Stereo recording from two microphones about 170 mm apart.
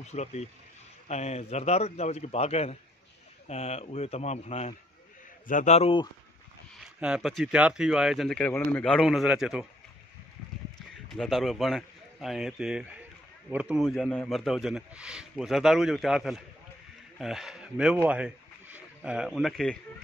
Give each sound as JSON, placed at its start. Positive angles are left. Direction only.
{"t": 0.0, "sound": "speech", "side_deg": 40}
{"t": 6.8, "sound": "a man's voice", "side_deg": -5}
{"t": 11.1, "sound": "a man's voice", "side_deg": 0}